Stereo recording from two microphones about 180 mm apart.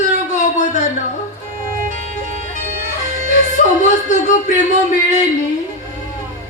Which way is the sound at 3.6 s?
45° left (ahead or behind).